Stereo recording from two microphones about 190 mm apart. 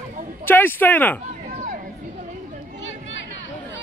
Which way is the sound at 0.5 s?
10° left (ahead or behind).